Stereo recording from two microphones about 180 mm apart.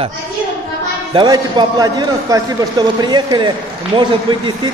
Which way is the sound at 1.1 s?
20° right (ahead or behind).